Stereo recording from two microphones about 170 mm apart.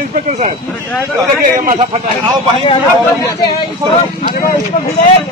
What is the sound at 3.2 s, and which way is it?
Speech, 20° left (ahead or behind).